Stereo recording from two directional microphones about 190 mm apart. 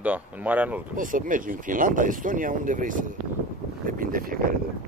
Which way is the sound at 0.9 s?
45° right (ahead or behind).